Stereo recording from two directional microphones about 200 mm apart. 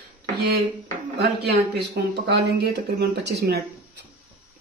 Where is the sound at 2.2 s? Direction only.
55° right (ahead or behind).